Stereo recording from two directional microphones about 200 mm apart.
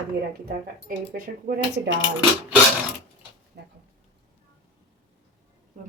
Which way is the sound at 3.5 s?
55° right (ahead or behind).